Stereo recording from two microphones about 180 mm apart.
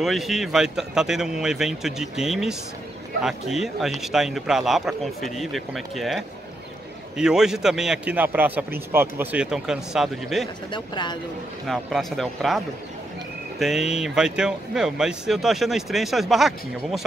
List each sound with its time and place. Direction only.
0.0 s speech: centre (ahead or behind)
10.7 s speech: 25° left (ahead or behind)
11.6 s speech: centre (ahead or behind)